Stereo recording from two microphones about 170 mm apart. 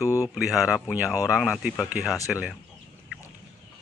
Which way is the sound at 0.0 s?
20° left (ahead or behind).